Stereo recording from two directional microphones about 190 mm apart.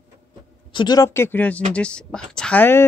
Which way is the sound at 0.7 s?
20° left (ahead or behind).